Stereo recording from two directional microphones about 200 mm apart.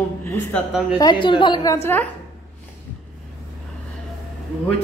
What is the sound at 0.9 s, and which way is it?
A woman's voice, 20° left (ahead or behind).